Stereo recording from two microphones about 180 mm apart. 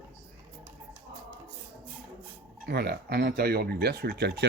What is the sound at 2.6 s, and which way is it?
Speech, 60° right (ahead or behind).